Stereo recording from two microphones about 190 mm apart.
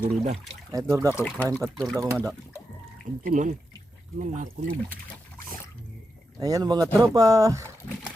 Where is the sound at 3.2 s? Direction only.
45° right (ahead or behind).